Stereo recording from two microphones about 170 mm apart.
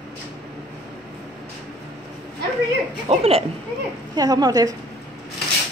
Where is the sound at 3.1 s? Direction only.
35° right (ahead or behind).